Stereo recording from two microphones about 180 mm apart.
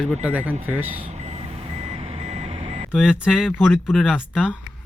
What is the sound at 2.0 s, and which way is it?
Vehicle, 35° right (ahead or behind).